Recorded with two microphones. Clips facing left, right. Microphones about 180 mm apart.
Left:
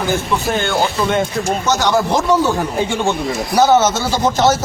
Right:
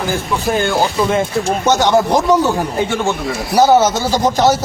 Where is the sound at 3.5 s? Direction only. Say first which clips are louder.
Right 2 dB; 10° right (ahead or behind).